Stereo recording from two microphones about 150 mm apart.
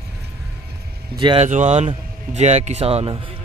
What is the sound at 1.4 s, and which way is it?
Speech, 50° right (ahead or behind).